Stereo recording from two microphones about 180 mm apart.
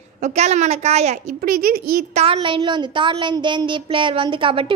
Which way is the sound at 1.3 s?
55° right (ahead or behind).